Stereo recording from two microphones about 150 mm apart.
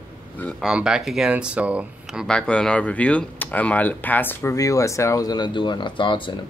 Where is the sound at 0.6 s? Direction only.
5° right (ahead or behind).